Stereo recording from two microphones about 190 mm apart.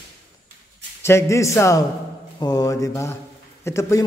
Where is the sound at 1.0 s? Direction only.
15° left (ahead or behind).